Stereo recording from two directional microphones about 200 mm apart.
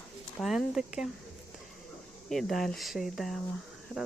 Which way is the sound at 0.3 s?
Centre (ahead or behind).